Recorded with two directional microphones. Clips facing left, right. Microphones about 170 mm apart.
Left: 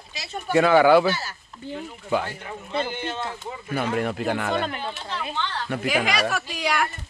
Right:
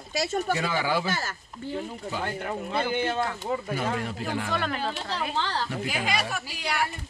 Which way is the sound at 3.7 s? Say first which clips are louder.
Left 4 dB; 60° left (ahead or behind).